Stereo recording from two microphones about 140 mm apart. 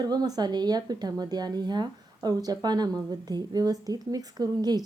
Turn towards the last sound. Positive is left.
turn(degrees=-30)  # may be behind; listen again after turning